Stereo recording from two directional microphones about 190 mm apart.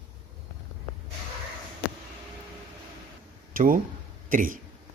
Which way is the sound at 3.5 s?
45° right (ahead or behind).